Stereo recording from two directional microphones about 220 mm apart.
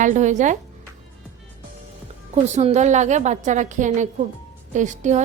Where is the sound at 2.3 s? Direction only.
30° right (ahead or behind).